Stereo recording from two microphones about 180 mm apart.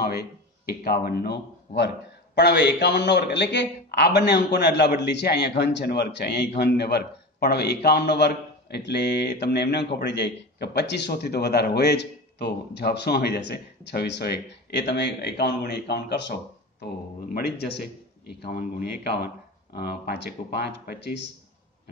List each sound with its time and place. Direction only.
0.0 s a man's voice: 60° left (ahead or behind)